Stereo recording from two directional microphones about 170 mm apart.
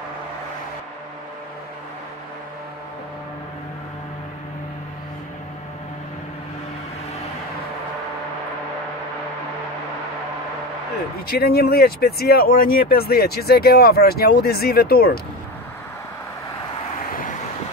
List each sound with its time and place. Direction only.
11.2 s speech: 65° left (ahead or behind)